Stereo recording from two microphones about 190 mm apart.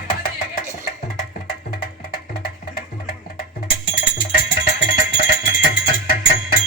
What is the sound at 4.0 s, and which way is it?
Music, 50° left (ahead or behind).